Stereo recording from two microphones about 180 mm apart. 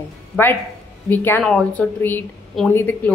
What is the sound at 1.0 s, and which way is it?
A woman's voice, 10° left (ahead or behind).